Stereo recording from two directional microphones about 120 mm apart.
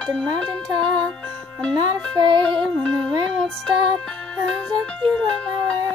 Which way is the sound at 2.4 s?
5° left (ahead or behind).